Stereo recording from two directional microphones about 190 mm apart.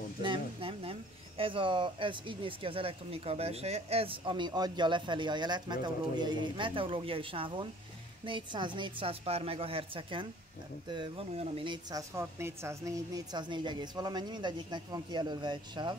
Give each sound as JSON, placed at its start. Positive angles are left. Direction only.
{"t": 0.2, "sound": "a sound", "side_deg": -25}
{"t": 1.4, "sound": "speech", "side_deg": -25}
{"t": 12.2, "sound": "speech", "side_deg": -15}